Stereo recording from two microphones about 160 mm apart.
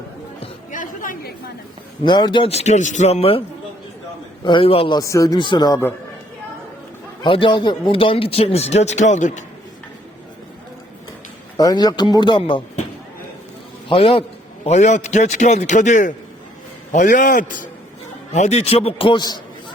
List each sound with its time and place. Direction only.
0.7 s chatter: 60° left (ahead or behind)
2.0 s speech: 30° left (ahead or behind)
4.4 s speech: 35° left (ahead or behind)
4.9 s a man's voice: 20° left (ahead or behind)
7.2 s speech: 30° left (ahead or behind); by 9.4 s 50° left (ahead or behind)
11.5 s a man's voice: 25° left (ahead or behind)
13.8 s a man's voice: 35° left (ahead or behind); by 17.7 s 60° left (ahead or behind)
18.3 s speech: 45° left (ahead or behind); by 19.4 s 25° left (ahead or behind)